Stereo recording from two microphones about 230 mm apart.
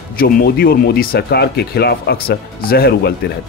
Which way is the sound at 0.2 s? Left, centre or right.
Left.